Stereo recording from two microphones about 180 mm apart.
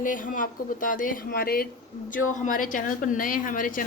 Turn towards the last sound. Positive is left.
turn(degrees=50)  # may be behind; listen again after turning